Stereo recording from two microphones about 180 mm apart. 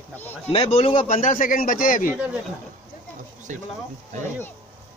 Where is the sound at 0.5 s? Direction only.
30° left (ahead or behind).